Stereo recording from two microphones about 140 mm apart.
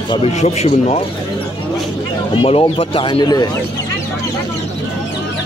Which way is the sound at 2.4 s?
45° left (ahead or behind).